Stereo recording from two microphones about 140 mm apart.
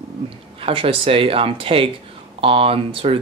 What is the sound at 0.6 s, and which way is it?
Speech, 40° right (ahead or behind).